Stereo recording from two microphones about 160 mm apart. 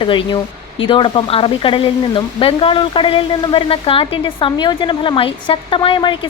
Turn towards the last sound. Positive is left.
turn(degrees=30)  # may be behind; listen again after turning